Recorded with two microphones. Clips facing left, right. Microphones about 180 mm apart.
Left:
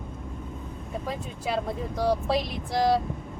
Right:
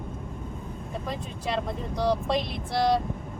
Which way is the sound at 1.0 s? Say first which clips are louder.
Left 1 dB; 5° left (ahead or behind).